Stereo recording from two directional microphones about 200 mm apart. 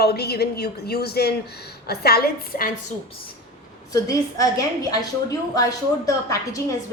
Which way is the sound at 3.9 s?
15° left (ahead or behind).